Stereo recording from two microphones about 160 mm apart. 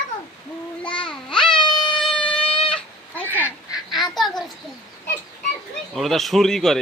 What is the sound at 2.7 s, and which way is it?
Cat, 10° left (ahead or behind).